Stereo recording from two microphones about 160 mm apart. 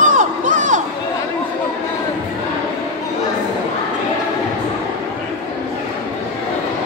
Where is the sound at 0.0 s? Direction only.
55° right (ahead or behind).